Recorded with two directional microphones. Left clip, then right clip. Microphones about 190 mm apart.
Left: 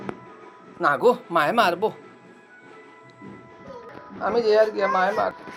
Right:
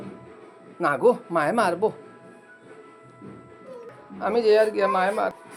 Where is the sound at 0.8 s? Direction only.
20° right (ahead or behind).